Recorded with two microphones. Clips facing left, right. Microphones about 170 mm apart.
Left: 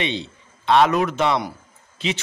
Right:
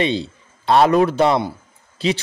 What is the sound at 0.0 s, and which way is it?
A man's voice, 35° right (ahead or behind).